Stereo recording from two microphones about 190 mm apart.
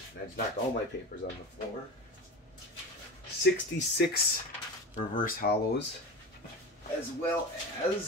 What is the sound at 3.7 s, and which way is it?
Speech, 70° left (ahead or behind).